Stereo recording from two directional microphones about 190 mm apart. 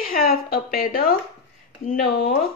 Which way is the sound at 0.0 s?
50° left (ahead or behind).